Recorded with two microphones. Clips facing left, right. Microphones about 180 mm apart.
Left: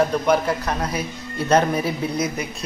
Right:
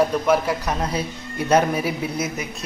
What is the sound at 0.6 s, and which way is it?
Speech, 30° right (ahead or behind).